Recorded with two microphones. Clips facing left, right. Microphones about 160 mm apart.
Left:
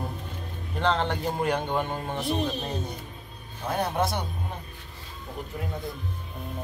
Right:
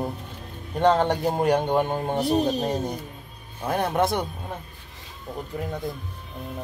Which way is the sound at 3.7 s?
50° right (ahead or behind).